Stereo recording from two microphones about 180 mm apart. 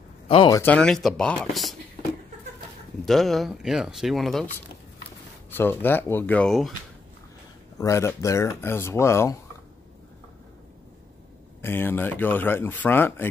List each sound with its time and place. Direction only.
0.5 s speech: 10° left (ahead or behind)
3.1 s speech: centre (ahead or behind)
5.5 s speech: 10° left (ahead or behind)
7.7 s speech: 15° left (ahead or behind)
11.6 s speech: 10° left (ahead or behind)